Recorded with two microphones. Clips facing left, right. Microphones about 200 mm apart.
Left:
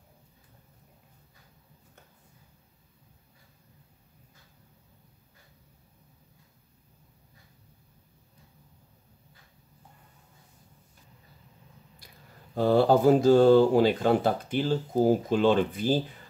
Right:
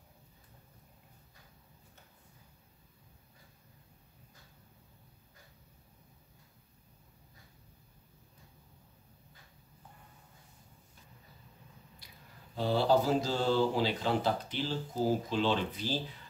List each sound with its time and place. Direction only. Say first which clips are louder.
12.5 s speech: left 7 dB; 50° left (ahead or behind)